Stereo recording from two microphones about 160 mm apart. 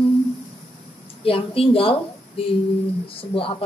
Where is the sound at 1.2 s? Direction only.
35° left (ahead or behind).